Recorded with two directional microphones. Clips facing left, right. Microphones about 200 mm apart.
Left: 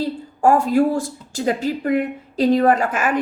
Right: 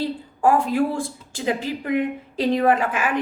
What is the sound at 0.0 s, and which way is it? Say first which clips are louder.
A woman's voice: left 2 dB; 40° left (ahead or behind).